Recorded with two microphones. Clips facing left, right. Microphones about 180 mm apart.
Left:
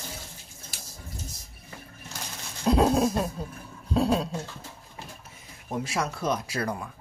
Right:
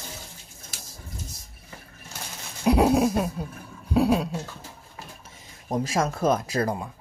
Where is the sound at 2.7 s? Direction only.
15° right (ahead or behind).